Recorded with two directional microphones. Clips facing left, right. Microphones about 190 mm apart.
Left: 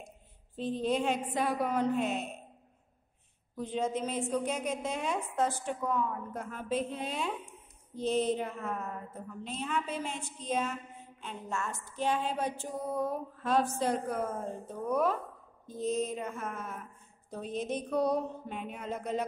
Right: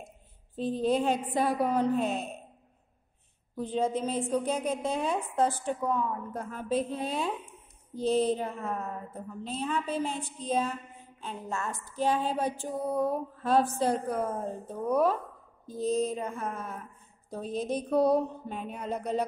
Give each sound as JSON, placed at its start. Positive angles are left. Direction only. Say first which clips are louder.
{"t": 0.7, "sound": "a woman's voice", "louder": "right 4 dB", "side_deg": -35}
{"t": 3.5, "sound": "a woman's voice", "louder": "right 3 dB", "side_deg": -30}